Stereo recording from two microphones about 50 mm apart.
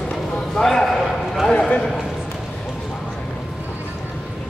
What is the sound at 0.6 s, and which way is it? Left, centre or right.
Speech, centre.